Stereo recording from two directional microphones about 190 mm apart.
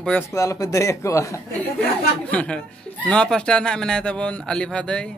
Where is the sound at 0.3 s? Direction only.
15° left (ahead or behind).